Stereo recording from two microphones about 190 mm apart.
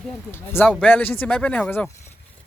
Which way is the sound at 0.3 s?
10° left (ahead or behind).